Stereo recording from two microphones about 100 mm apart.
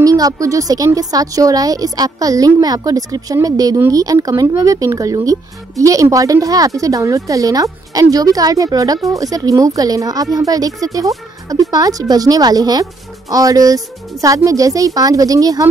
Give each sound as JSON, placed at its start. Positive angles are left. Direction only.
{"t": 0.0, "sound": "speech", "side_deg": -35}